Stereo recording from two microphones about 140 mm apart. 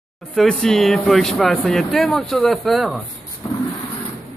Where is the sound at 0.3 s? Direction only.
5° left (ahead or behind).